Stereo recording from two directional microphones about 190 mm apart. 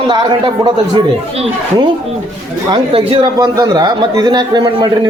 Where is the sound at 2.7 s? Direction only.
25° right (ahead or behind).